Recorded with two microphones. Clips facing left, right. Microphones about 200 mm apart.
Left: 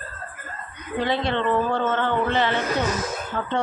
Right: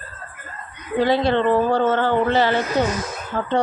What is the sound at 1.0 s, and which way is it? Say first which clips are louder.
Speech: right 6 dB; 40° right (ahead or behind).